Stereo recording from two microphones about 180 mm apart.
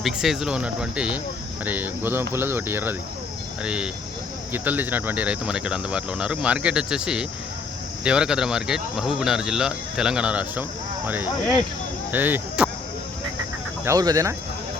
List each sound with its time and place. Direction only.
0.0 s speech: centre (ahead or behind)
13.8 s speech: 20° right (ahead or behind)